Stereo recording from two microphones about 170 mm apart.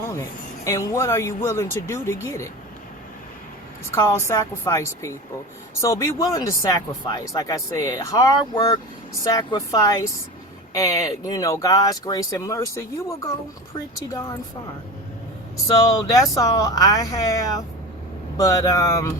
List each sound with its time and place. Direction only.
0.0 s speech: 15° left (ahead or behind)
3.9 s speech: 15° left (ahead or behind)
5.8 s speech: 15° left (ahead or behind)
15.6 s speech: 20° left (ahead or behind)